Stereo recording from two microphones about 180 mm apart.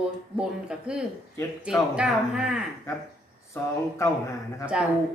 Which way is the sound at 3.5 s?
15° left (ahead or behind).